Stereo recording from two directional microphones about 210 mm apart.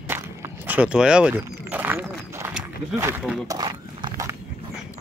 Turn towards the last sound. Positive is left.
turn(degrees=-20)  # may be behind; listen again after turning